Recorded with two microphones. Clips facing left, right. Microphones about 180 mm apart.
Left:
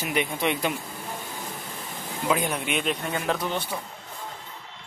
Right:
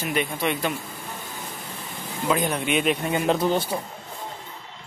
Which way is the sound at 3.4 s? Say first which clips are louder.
Right 7 dB; 35° right (ahead or behind).